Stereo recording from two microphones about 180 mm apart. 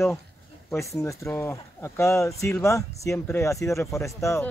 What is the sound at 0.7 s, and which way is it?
Speech, 15° left (ahead or behind).